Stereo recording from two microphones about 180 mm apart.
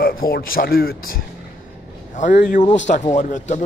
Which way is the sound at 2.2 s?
45° left (ahead or behind).